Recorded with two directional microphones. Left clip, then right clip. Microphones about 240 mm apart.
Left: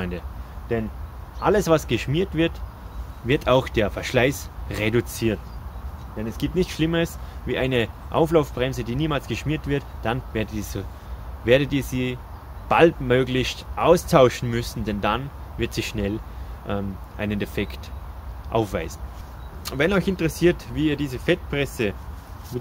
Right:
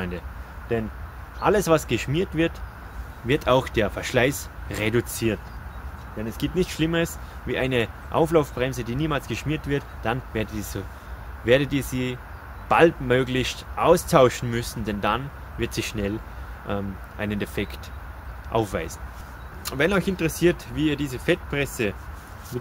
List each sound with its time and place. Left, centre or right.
0.7 s speech: centre